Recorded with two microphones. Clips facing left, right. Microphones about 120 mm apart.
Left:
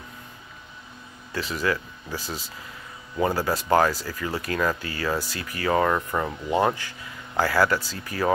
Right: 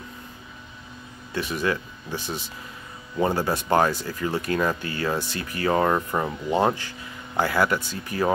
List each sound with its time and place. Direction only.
1.3 s speech: 20° right (ahead or behind)